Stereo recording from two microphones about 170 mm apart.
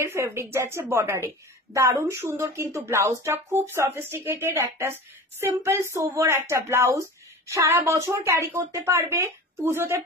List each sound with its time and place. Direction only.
0.0 s a woman's voice: 15° right (ahead or behind)